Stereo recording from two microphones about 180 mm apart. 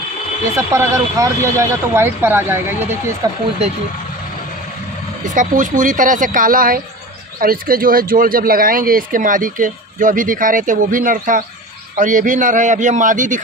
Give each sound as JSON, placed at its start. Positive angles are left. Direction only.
{"t": 0.6, "sound": "speech", "side_deg": -15}
{"t": 3.6, "sound": "speech", "side_deg": -35}
{"t": 5.3, "sound": "speech", "side_deg": -45}